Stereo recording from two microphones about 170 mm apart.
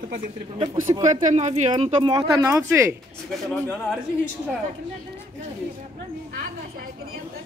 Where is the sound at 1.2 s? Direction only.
45° right (ahead or behind).